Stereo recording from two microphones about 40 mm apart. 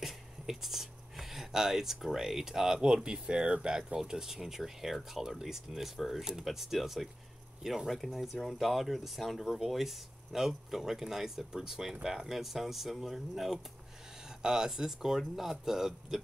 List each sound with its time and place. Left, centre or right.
0.0 s a sound: centre
2.1 s speech: centre
14.2 s speech: centre